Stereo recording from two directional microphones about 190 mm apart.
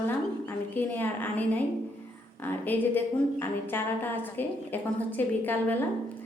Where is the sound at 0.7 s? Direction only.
10° left (ahead or behind).